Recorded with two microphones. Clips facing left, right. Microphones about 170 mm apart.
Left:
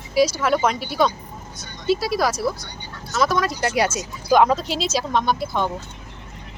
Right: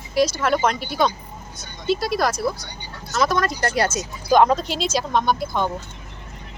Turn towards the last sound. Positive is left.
turn(degrees=0)  # may be behind; listen again after turning